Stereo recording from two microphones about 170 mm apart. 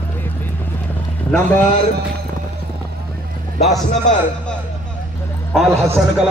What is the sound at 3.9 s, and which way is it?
Speech, 45° left (ahead or behind).